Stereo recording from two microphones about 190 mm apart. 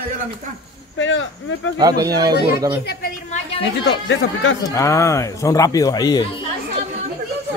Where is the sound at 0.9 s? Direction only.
80° left.